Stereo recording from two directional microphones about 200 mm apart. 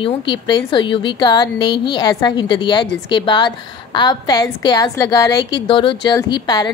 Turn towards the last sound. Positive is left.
turn(degrees=20)  # may be behind; listen again after turning